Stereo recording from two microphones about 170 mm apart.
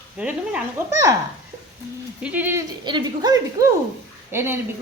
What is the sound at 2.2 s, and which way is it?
Speech, 10° right (ahead or behind).